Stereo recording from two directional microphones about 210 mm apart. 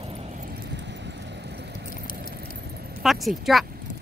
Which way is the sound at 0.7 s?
55° right (ahead or behind).